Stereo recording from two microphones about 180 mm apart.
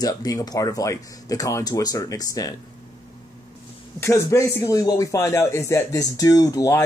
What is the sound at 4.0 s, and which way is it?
Speech, 15° left (ahead or behind).